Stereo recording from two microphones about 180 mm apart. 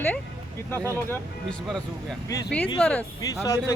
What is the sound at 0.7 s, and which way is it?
Speech, 15° right (ahead or behind).